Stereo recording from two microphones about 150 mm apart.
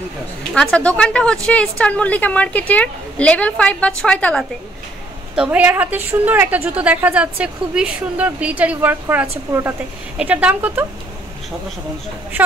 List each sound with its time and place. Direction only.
0.6 s a woman's voice: 5° left (ahead or behind)
5.3 s a woman's voice: 10° right (ahead or behind)